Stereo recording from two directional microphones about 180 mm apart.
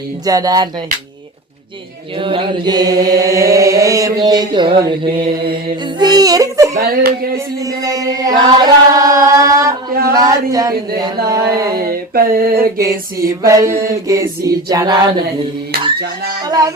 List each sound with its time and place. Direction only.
0.3 s chant: 20° right (ahead or behind)
2.1 s chant: 30° right (ahead or behind)
6.0 s yodeling: 20° right (ahead or behind)
6.7 s a sound: 55° right (ahead or behind)
7.3 s chant: 20° right (ahead or behind)
11.3 s music: 20° right (ahead or behind)
11.8 s a sound: 55° right (ahead or behind)
12.8 s music: 15° right (ahead or behind)
16.0 s child singing: 60° right (ahead or behind)
16.5 s music: 20° right (ahead or behind)